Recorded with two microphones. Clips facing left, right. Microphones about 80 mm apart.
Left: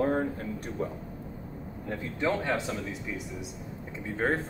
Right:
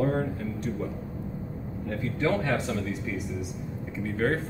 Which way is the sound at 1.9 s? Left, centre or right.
Centre.